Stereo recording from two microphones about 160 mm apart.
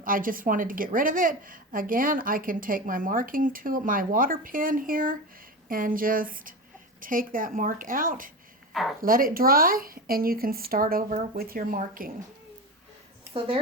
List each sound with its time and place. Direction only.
0.0 s a woman's voice: 60° right (ahead or behind)
8.7 s a woman's voice: centre (ahead or behind)
9.0 s a woman's voice: 60° right (ahead or behind)